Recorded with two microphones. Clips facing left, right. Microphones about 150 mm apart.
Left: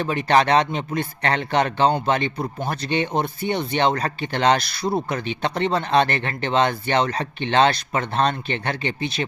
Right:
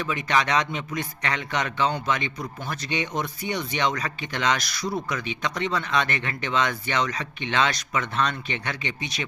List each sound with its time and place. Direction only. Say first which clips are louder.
0.0 s a man's voice: left 6 dB; 35° left (ahead or behind)
4.8 s speech: left 5 dB; 55° left (ahead or behind)
5.0 s a man's voice: left 4 dB; 30° left (ahead or behind)